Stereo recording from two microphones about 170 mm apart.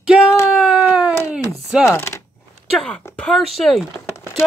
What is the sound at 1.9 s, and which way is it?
Speech, 15° left (ahead or behind).